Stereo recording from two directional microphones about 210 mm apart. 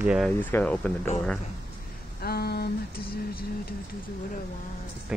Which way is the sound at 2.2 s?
50° left (ahead or behind).